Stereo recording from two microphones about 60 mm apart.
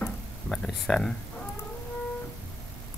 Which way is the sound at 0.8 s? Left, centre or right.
Centre.